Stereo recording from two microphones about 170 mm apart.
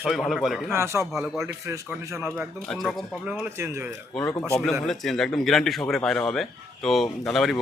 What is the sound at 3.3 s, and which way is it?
Speech, 10° right (ahead or behind).